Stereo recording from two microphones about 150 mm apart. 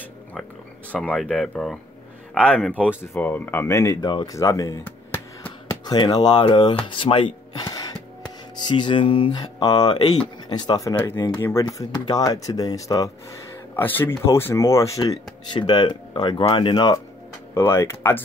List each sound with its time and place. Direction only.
0.0 s a sound: 10° left (ahead or behind)
0.9 s speech: 5° left (ahead or behind); by 4.7 s 20° left (ahead or behind)
4.8 s a sound: 10° left (ahead or behind)
5.9 s speech: 30° left (ahead or behind)
6.9 s music: 35° left (ahead or behind)
8.5 s speech: 30° left (ahead or behind)
15.5 s speech: 30° left (ahead or behind)
17.6 s speech: 20° left (ahead or behind)